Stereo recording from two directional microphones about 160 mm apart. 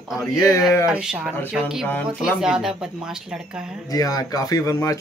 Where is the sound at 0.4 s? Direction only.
20° left (ahead or behind).